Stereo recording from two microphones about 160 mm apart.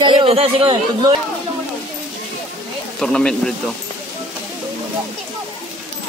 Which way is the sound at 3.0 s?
5° left (ahead or behind).